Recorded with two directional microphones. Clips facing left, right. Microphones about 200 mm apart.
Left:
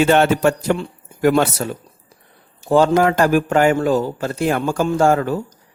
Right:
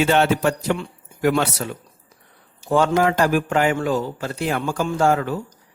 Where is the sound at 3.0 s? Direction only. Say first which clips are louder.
Left 3 dB; 50° left (ahead or behind).